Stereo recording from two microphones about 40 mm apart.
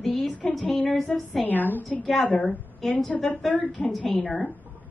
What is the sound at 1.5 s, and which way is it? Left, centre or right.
Speech, left.